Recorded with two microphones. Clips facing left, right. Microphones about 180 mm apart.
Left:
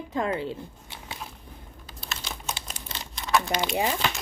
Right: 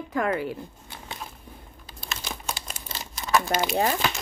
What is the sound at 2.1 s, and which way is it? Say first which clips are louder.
Computer keyboard: right 2 dB; centre (ahead or behind).